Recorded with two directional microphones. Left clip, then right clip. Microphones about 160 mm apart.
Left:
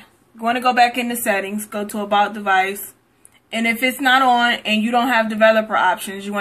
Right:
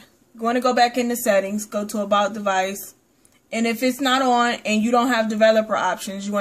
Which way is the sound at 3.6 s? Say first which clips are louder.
Left 4 dB; 70° right (ahead or behind).